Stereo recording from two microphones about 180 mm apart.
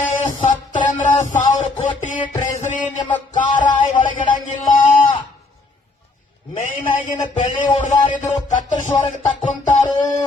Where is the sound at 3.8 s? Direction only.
45° left (ahead or behind).